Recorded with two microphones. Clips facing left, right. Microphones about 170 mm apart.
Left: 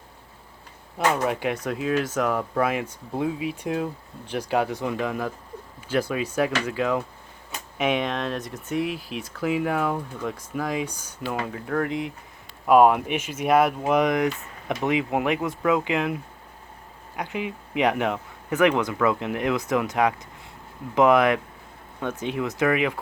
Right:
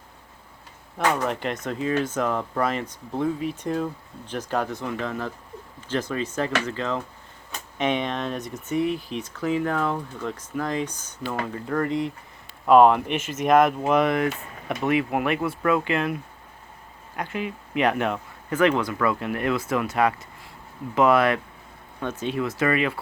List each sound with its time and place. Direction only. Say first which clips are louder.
0.9 s speech: left 1 dB; 5° left (ahead or behind)
17.2 s speech: even; 15° left (ahead or behind)